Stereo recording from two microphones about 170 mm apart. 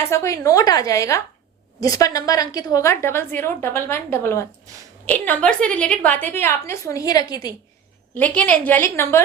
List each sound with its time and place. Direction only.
0.1 s a woman's voice: 15° left (ahead or behind)
8.1 s a woman's voice: 10° left (ahead or behind)